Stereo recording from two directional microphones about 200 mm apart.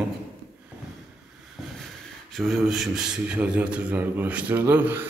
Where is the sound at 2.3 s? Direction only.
Centre (ahead or behind).